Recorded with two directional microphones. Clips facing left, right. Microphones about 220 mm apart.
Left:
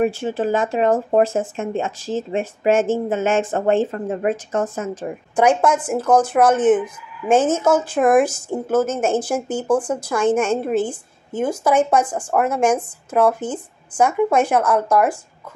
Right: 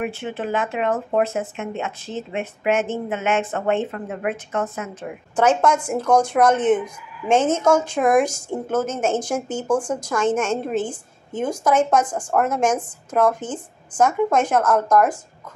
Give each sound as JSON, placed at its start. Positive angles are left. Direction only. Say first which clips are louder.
{"t": 0.0, "sound": "speech", "louder": "left 7 dB", "side_deg": 35}
{"t": 1.9, "sound": "speech", "louder": "left 5 dB", "side_deg": 90}
{"t": 2.6, "sound": "speech", "louder": "left 5 dB", "side_deg": 35}
{"t": 5.3, "sound": "a woman's voice", "louder": "left 2 dB", "side_deg": 10}